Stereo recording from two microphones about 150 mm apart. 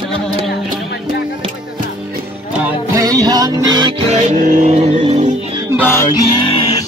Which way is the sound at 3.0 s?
25° right (ahead or behind).